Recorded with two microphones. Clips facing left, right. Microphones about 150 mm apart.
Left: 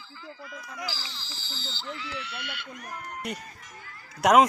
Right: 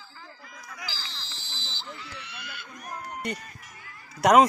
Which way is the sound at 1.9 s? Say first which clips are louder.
Left 7 dB; 85° left.